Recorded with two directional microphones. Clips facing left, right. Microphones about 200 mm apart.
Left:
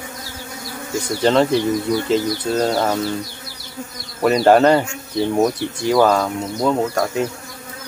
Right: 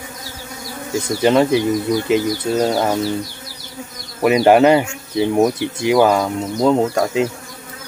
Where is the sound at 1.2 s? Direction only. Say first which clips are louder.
Right 1 dB; 10° right (ahead or behind).